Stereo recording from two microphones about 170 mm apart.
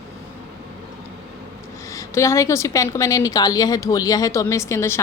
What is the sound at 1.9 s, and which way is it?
A woman's voice, 15° left (ahead or behind).